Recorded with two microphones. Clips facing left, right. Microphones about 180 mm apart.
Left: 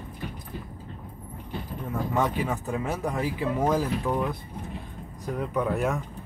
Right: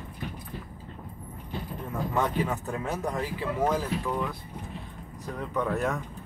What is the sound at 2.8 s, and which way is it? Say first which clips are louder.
Speech: left 1 dB; 10° left (ahead or behind).